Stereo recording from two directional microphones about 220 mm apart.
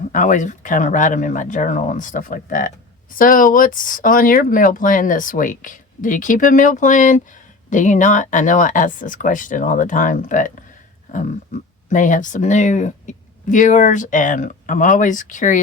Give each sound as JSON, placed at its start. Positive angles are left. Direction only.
{"t": 0.1, "sound": "speech", "side_deg": 35}
{"t": 11.1, "sound": "a sound", "side_deg": 35}
{"t": 11.9, "sound": "speech", "side_deg": 35}